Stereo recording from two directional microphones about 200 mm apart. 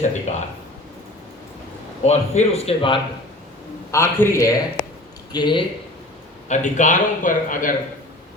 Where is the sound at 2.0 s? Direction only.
35° left (ahead or behind).